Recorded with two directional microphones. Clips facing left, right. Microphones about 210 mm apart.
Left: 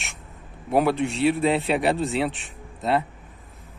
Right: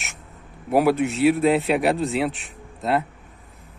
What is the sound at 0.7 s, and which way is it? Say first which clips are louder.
A man's voice: right 2 dB; 5° right (ahead or behind).